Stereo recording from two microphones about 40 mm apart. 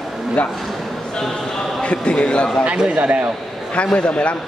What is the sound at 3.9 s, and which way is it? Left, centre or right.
Speech, left.